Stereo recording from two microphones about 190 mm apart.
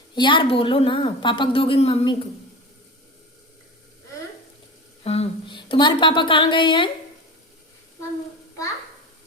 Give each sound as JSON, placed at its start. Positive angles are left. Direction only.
{"t": 0.2, "sound": "a woman's voice", "side_deg": 25}
{"t": 5.0, "sound": "speech", "side_deg": 30}